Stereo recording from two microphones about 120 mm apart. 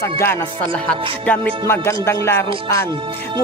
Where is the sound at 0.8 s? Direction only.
10° left (ahead or behind).